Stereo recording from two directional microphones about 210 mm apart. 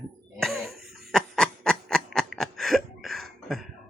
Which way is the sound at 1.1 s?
Centre (ahead or behind).